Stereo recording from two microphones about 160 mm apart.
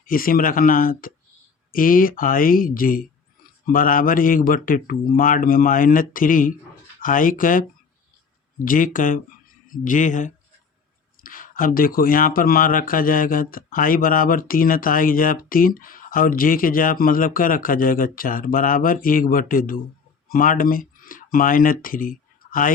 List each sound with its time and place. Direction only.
0.0 s speech: 60° left (ahead or behind)